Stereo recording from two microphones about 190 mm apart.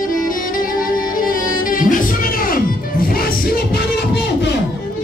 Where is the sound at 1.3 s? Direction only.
45° left (ahead or behind).